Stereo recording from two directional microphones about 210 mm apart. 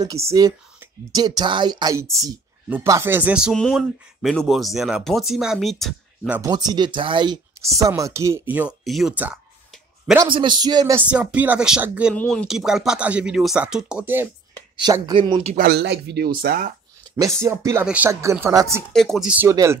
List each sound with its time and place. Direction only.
0.0 s speech: 15° right (ahead or behind)
6.5 s speech: 20° right (ahead or behind)
10.1 s a man's voice: 25° right (ahead or behind)
11.0 s speech: 5° right (ahead or behind)
12.2 s speech: 5° left (ahead or behind)
14.5 s speech: 20° right (ahead or behind)
15.5 s speech: 50° right (ahead or behind)
17.2 s speech: 15° right (ahead or behind)
18.9 s speech: centre (ahead or behind)
19.5 s speech: 15° right (ahead or behind)